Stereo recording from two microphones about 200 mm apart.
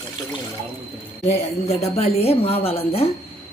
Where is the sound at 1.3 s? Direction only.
35° left (ahead or behind).